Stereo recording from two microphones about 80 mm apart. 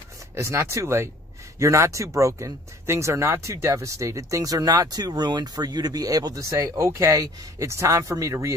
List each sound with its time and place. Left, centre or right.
0.4 s speech: right